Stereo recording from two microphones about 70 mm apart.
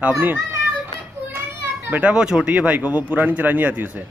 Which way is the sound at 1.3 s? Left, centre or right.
Right.